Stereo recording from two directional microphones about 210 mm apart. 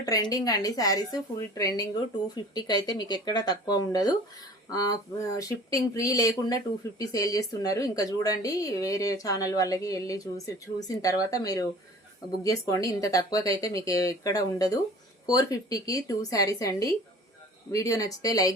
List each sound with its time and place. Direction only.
0.0 s a woman's voice: 15° left (ahead or behind)